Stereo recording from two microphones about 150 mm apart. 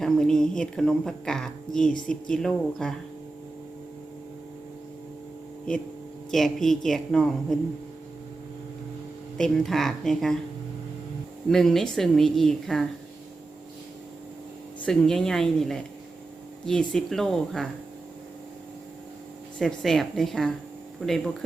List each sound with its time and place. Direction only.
0.0 s speech: 5° left (ahead or behind)
6.3 s speech: centre (ahead or behind)
9.4 s speech: centre (ahead or behind)
11.4 s speech: 5° left (ahead or behind)
14.8 s speech: 5° left (ahead or behind)
19.5 s speech: centre (ahead or behind)